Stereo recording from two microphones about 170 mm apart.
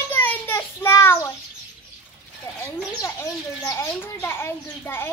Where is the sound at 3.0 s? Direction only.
20° left (ahead or behind).